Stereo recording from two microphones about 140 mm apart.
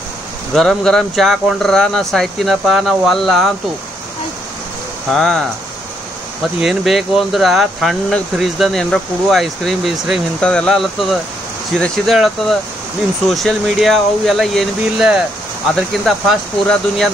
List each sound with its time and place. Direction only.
0.6 s speech: centre (ahead or behind)
5.1 s speech: 5° left (ahead or behind)
6.6 s speech: centre (ahead or behind)